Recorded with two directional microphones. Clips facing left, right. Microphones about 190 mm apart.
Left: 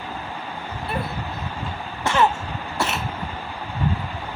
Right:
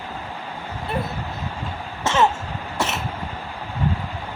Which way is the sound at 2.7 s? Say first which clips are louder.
Even; 20° right (ahead or behind).